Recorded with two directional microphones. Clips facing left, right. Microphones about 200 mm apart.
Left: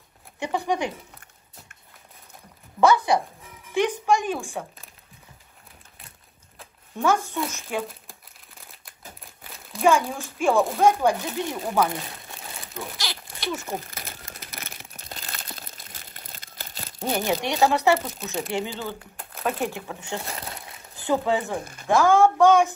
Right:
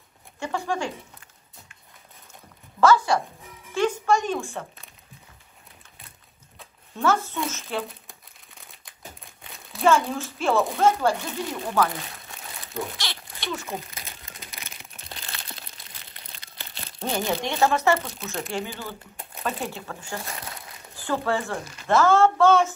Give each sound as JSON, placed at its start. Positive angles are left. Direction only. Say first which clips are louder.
{"t": 0.4, "sound": "speech", "louder": "left 2 dB", "side_deg": 15}
{"t": 3.7, "sound": "speech", "louder": "even", "side_deg": 15}
{"t": 7.0, "sound": "speech", "louder": "left 1 dB", "side_deg": 15}
{"t": 8.1, "sound": "crumpling", "louder": "left 1 dB", "side_deg": 0}
{"t": 9.8, "sound": "speech", "louder": "even", "side_deg": 15}
{"t": 12.9, "sound": "speech", "louder": "left 1 dB", "side_deg": 5}
{"t": 14.6, "sound": "a sound", "louder": "left 3 dB", "side_deg": 40}
{"t": 17.0, "sound": "speech", "louder": "left 1 dB", "side_deg": 15}
{"t": 18.9, "sound": "speech", "louder": "left 3 dB", "side_deg": 0}
{"t": 19.6, "sound": "speech", "louder": "left 4 dB", "side_deg": 15}
{"t": 20.1, "sound": "crumpling", "louder": "left 3 dB", "side_deg": 25}
{"t": 21.5, "sound": "speech", "louder": "left 3 dB", "side_deg": 55}
{"t": 21.8, "sound": "speech", "louder": "left 1 dB", "side_deg": 15}